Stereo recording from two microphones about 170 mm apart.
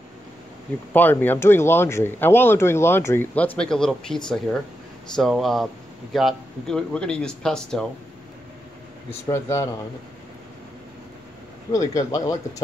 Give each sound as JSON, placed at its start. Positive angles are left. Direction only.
{"t": 0.9, "sound": "speech", "side_deg": 10}
{"t": 9.3, "sound": "speech", "side_deg": 15}
{"t": 11.7, "sound": "speech", "side_deg": 20}